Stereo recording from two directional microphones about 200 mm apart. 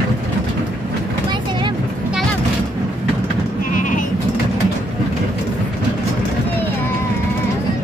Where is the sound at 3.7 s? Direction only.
40° left (ahead or behind).